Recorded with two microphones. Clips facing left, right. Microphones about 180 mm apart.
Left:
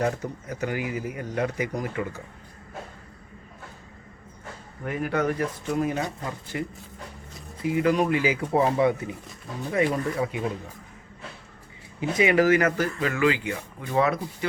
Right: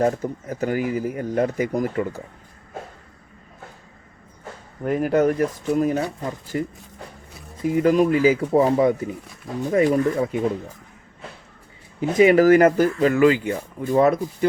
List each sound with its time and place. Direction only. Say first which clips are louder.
0.0 s speech: right 6 dB; 45° right (ahead or behind)
4.9 s speech: right 7 dB; 45° right (ahead or behind)
11.9 s speech: right 6 dB; 40° right (ahead or behind)